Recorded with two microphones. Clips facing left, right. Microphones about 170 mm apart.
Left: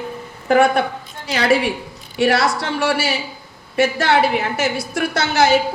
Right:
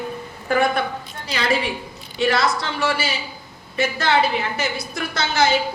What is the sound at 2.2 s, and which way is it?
A woman's voice, 75° left (ahead or behind).